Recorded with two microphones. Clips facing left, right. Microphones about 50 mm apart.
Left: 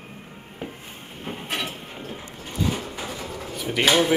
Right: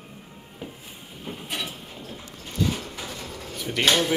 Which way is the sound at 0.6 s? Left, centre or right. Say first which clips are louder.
Left 3 dB; left.